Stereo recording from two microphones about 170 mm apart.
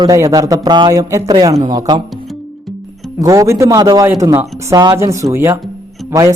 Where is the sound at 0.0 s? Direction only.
20° right (ahead or behind).